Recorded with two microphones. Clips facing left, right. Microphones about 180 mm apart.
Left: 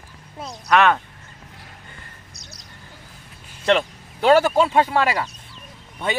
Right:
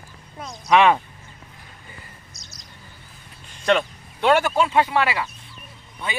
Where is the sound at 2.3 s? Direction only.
60° left (ahead or behind).